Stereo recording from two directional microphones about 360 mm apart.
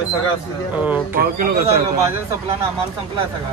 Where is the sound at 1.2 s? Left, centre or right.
Right.